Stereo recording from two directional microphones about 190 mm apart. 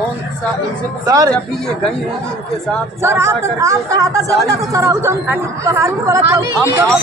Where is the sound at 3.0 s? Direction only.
15° right (ahead or behind).